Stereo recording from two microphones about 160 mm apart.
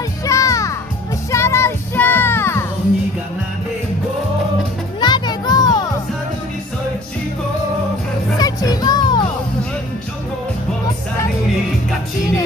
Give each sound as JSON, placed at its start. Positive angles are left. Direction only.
{"t": 0.3, "sound": "music", "side_deg": 20}
{"t": 1.3, "sound": "child singing", "side_deg": 15}
{"t": 5.0, "sound": "children playing", "side_deg": 25}
{"t": 8.4, "sound": "music", "side_deg": 25}